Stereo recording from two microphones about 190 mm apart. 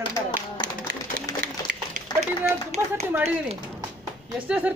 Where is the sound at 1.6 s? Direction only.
40° right (ahead or behind).